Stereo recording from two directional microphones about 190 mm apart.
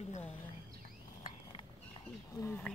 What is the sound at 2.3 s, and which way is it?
Speech, 10° left (ahead or behind).